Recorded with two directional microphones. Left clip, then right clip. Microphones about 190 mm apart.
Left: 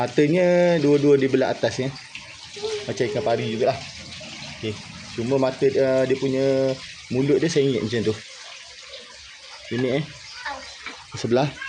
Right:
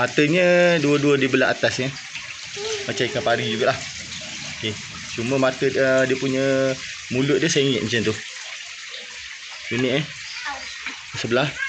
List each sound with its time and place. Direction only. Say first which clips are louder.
0.0 s speech: right 1 dB; 10° left (ahead or behind)
2.9 s speech: right 2 dB; 10° left (ahead or behind)
5.3 s speech: even; 5° left (ahead or behind)
11.2 s speech: even; 25° left (ahead or behind)